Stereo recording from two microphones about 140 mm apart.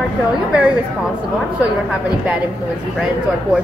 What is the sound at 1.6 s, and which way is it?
Speech, 10° right (ahead or behind).